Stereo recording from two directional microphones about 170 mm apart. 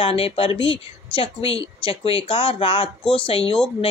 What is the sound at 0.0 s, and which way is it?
Speech, 35° left (ahead or behind).